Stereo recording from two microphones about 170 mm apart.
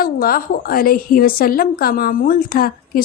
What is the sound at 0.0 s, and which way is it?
A woman's voice, 60° left (ahead or behind).